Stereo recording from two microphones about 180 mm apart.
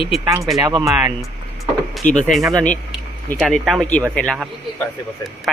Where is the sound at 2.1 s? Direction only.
40° left (ahead or behind).